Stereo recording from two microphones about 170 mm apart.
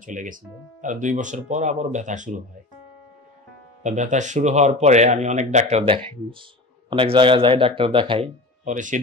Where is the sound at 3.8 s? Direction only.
45° right (ahead or behind).